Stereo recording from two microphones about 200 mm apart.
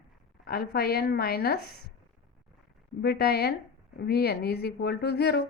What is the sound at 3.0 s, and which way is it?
A woman's voice, 55° left (ahead or behind).